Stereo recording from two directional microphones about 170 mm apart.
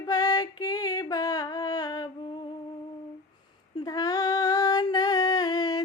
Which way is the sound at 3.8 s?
20° left (ahead or behind).